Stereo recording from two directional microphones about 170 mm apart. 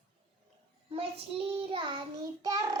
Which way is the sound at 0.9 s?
35° right (ahead or behind).